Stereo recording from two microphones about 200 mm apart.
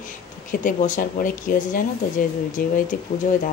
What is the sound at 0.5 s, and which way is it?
Speech, 40° left (ahead or behind).